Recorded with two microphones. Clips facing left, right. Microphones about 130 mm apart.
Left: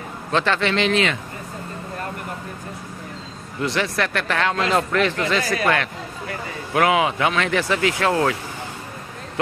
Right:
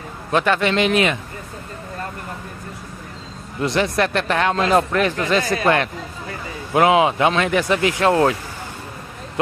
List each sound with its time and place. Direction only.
0.3 s speech: 15° right (ahead or behind)
3.6 s speech: 20° right (ahead or behind)